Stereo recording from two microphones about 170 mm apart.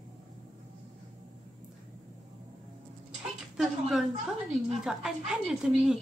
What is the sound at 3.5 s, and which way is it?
A woman's voice, centre (ahead or behind).